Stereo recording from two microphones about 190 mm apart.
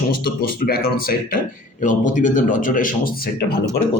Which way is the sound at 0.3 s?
50° left (ahead or behind).